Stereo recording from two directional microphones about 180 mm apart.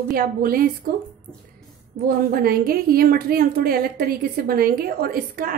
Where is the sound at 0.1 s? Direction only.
55° right (ahead or behind).